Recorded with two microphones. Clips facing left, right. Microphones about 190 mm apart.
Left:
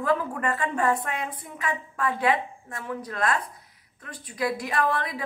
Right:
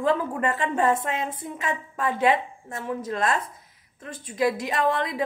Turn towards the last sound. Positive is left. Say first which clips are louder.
# right 2 dB
turn(degrees=-20)  # may be behind; listen again after turning